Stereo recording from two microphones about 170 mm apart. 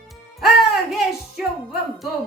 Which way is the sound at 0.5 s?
Centre (ahead or behind).